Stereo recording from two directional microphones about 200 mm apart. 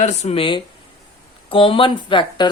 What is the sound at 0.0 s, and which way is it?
Speech, 35° left (ahead or behind).